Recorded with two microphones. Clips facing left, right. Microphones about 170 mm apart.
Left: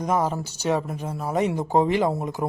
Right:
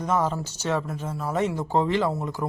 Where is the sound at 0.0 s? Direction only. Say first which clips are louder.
Left 1 dB; 10° left (ahead or behind).